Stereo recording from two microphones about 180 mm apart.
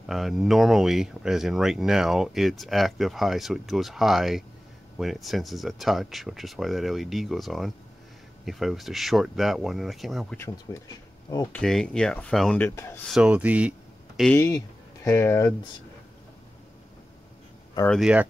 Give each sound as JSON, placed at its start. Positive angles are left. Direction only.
{"t": 0.0, "sound": "speech", "side_deg": 0}
{"t": 10.3, "sound": "speech", "side_deg": 15}
{"t": 11.5, "sound": "speech", "side_deg": 5}
{"t": 13.1, "sound": "speech", "side_deg": -5}
{"t": 14.2, "sound": "speech", "side_deg": 15}
{"t": 17.8, "sound": "speech", "side_deg": 0}